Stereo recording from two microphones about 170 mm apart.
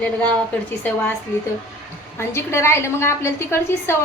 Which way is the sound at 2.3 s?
15° left (ahead or behind).